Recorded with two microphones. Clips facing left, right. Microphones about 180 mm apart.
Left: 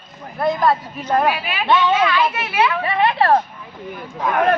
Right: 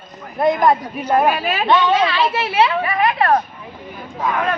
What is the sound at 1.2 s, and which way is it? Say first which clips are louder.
Speech: right 3 dB; 45° right (ahead or behind).